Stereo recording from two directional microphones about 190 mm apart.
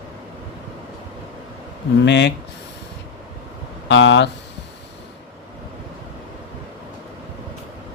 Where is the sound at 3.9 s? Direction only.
70° left (ahead or behind).